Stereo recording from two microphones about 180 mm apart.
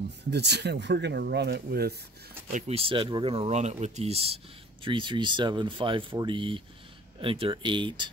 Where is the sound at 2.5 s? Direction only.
35° right (ahead or behind).